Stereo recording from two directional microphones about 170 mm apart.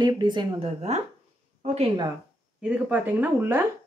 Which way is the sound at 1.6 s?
40° right (ahead or behind).